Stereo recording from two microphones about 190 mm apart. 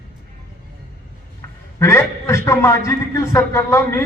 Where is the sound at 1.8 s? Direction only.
15° left (ahead or behind).